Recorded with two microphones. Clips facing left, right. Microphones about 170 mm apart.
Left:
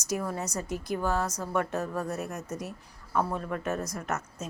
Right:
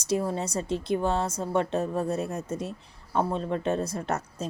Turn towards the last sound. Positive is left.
turn(degrees=-30)  # may be behind; listen again after turning